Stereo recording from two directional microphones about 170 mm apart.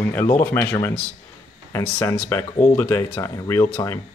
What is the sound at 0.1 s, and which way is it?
Speech, 15° left (ahead or behind).